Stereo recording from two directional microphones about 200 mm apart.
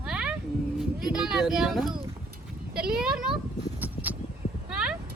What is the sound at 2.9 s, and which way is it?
Speech, 5° right (ahead or behind).